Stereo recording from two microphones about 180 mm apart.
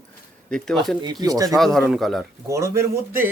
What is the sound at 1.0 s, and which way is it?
Speech, 20° right (ahead or behind).